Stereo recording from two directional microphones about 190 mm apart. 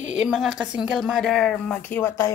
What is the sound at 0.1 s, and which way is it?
A woman's voice, 5° right (ahead or behind).